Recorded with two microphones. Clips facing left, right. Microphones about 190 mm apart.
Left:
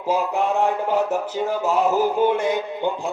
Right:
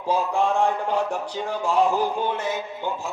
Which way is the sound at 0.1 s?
5° left (ahead or behind).